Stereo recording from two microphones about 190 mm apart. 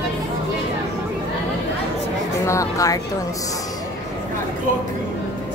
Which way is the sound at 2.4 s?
15° left (ahead or behind).